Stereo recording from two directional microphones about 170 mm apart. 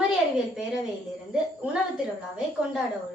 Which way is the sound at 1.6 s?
5° right (ahead or behind).